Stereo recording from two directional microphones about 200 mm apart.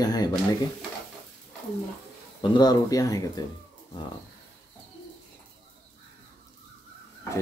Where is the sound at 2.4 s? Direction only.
20° left (ahead or behind).